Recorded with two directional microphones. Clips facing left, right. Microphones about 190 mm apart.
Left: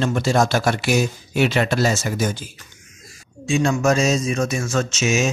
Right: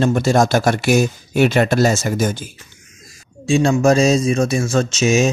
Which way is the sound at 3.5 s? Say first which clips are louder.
Right 4 dB; 30° right (ahead or behind).